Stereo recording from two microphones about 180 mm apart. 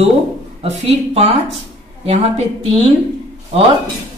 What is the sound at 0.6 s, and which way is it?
A woman's voice, 35° right (ahead or behind).